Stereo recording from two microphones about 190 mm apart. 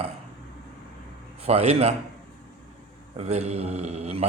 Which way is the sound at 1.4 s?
30° right (ahead or behind).